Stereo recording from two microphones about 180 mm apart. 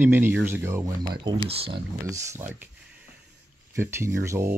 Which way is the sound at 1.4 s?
30° right (ahead or behind).